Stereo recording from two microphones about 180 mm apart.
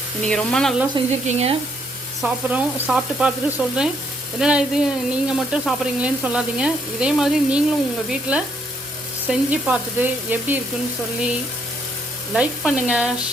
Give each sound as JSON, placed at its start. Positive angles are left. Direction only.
{"t": 0.2, "sound": "speech", "side_deg": 5}
{"t": 1.3, "sound": "speech", "side_deg": -35}
{"t": 2.2, "sound": "speech", "side_deg": -5}
{"t": 12.3, "sound": "speech", "side_deg": -5}